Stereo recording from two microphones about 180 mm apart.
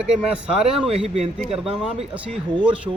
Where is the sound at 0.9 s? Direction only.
35° right (ahead or behind).